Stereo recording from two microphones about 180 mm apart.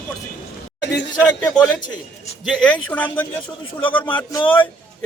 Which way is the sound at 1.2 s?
5° left (ahead or behind).